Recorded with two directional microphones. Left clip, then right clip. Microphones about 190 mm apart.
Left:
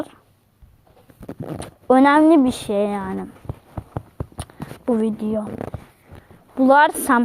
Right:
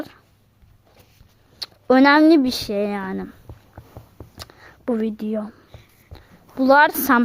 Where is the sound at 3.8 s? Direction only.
55° left (ahead or behind).